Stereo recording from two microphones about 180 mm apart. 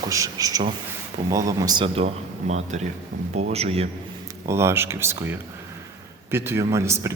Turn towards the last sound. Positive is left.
turn(degrees=-15)  # may be behind; listen again after turning